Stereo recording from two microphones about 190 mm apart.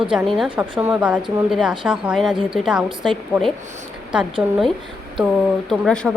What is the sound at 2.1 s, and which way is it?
Speech, centre (ahead or behind).